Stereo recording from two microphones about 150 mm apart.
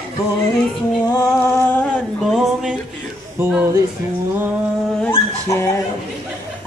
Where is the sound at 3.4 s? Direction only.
15° right (ahead or behind).